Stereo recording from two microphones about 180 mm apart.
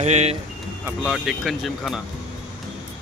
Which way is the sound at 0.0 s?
40° right (ahead or behind).